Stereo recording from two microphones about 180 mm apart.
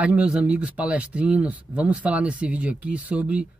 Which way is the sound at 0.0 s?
5° right (ahead or behind).